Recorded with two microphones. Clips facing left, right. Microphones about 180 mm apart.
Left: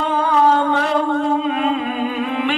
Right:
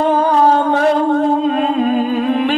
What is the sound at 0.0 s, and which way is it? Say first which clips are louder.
Music: right 4 dB; 40° right (ahead or behind).